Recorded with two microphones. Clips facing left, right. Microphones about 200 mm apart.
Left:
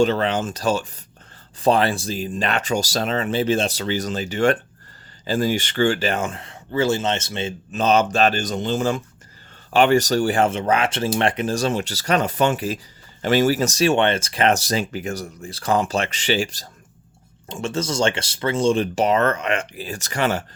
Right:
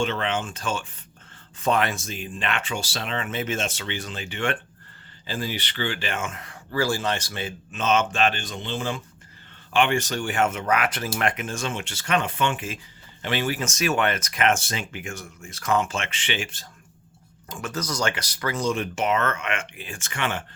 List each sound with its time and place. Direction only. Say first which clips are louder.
0.0 s speech: left 7 dB; 35° left (ahead or behind)
7.7 s speech: left 5 dB; 35° left (ahead or behind)
17.5 s speech: left 6 dB; 25° left (ahead or behind)